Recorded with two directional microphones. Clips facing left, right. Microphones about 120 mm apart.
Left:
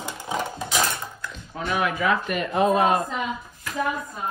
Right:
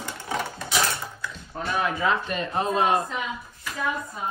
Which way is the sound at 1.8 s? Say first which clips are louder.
Left 1 dB; 25° right (ahead or behind).